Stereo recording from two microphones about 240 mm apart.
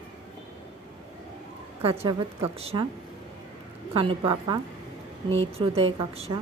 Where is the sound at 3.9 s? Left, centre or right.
Right.